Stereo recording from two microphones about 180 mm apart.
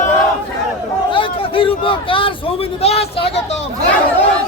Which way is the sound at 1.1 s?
30° left (ahead or behind).